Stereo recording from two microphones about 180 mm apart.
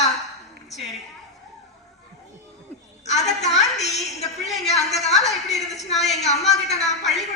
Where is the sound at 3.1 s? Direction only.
40° left (ahead or behind).